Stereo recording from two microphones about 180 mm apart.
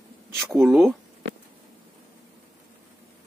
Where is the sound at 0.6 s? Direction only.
Centre (ahead or behind).